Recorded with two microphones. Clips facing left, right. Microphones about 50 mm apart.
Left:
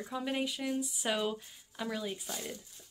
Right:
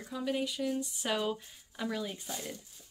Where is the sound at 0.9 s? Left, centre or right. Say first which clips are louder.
Even; centre.